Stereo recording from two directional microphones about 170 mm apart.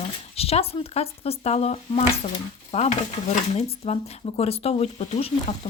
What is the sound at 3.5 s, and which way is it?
Speech, 35° left (ahead or behind).